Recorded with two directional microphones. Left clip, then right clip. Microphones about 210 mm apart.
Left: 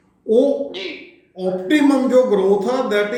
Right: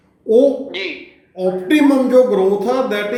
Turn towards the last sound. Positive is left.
turn(degrees=0)  # may be behind; listen again after turning